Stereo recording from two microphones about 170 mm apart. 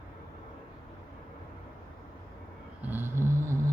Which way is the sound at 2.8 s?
15° right (ahead or behind).